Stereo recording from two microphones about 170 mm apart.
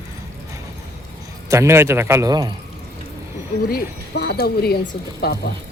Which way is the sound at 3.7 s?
70° left (ahead or behind).